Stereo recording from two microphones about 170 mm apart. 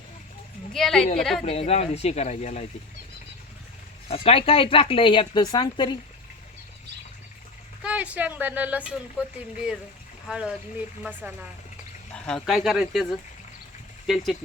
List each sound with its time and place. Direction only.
0.7 s speech: 5° left (ahead or behind)
1.5 s speech: 35° left (ahead or behind)
4.1 s speech: 35° left (ahead or behind)
7.8 s speech: 5° right (ahead or behind)
10.2 s speech: 5° right (ahead or behind)
12.1 s speech: 5° left (ahead or behind)
14.1 s speech: centre (ahead or behind)